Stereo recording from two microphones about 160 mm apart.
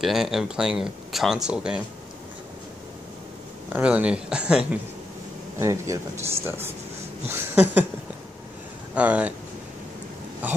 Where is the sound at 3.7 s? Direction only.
10° right (ahead or behind).